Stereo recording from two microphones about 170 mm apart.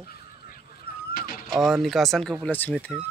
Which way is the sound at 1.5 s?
Centre (ahead or behind).